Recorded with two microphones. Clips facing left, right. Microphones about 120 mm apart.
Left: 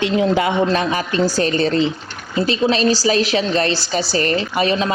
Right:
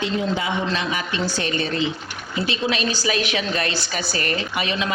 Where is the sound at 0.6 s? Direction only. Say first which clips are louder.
Left 6 dB; 40° left (ahead or behind).